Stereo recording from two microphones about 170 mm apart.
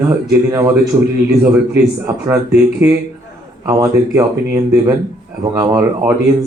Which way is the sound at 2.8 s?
20° right (ahead or behind).